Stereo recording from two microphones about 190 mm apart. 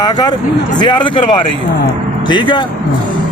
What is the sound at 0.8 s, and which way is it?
Speech, 25° left (ahead or behind).